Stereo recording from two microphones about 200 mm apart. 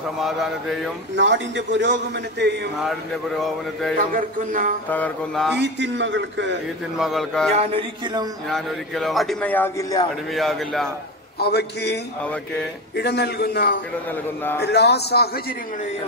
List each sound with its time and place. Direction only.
0.2 s a man's voice: centre (ahead or behind)
1.1 s a man's voice: 65° right (ahead or behind)
4.1 s speech: 45° right (ahead or behind)
4.8 s a man's voice: 10° left (ahead or behind)
5.6 s a man's voice: 65° right (ahead or behind)
7.0 s a man's voice: centre (ahead or behind)
7.5 s speech: 30° right (ahead or behind)
8.5 s a man's voice: centre (ahead or behind)
10.3 s a man's voice: centre (ahead or behind)
11.3 s a man's voice: 55° left (ahead or behind)